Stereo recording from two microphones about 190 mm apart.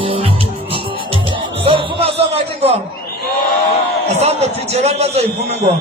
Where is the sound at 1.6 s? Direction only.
30° right (ahead or behind).